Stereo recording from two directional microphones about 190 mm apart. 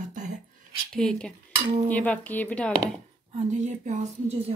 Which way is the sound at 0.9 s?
5° left (ahead or behind).